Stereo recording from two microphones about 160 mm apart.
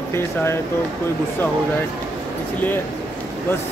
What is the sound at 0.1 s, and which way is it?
Speech, 15° left (ahead or behind).